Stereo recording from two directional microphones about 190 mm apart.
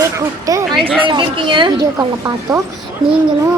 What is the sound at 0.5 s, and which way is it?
A woman's voice, 20° right (ahead or behind).